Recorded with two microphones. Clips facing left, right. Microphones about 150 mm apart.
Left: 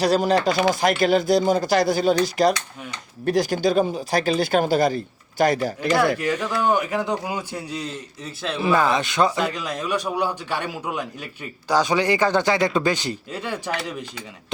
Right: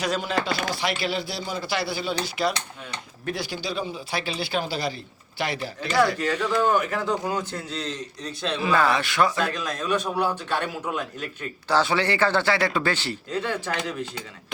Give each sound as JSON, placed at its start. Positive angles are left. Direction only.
{"t": 0.0, "sound": "speech", "side_deg": 35}
{"t": 6.1, "sound": "a man's voice", "side_deg": 10}
{"t": 8.7, "sound": "a man's voice", "side_deg": 20}